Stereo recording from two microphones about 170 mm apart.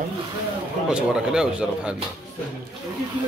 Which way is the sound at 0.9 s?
5° right (ahead or behind).